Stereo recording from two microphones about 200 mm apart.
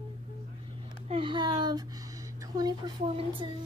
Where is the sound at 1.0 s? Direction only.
25° right (ahead or behind).